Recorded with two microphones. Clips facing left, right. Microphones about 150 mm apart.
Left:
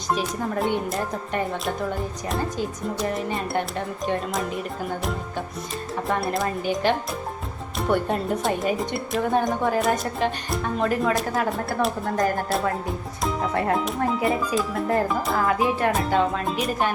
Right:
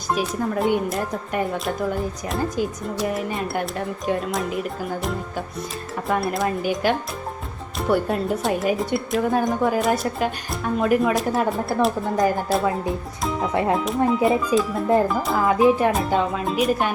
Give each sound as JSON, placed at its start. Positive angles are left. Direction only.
{"t": 0.1, "sound": "a woman's voice", "side_deg": -5}
{"t": 6.1, "sound": "a woman's voice", "side_deg": 0}
{"t": 7.8, "sound": "a woman's voice", "side_deg": -5}
{"t": 13.7, "sound": "a woman's voice", "side_deg": 0}
{"t": 15.4, "sound": "music", "side_deg": -15}
{"t": 15.9, "sound": "a woman's voice", "side_deg": -5}